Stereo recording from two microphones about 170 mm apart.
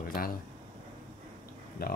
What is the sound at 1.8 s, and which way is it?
Speech, 65° left (ahead or behind).